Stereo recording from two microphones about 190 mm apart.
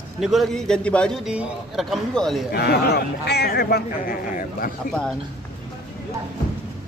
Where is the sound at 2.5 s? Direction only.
60° left (ahead or behind).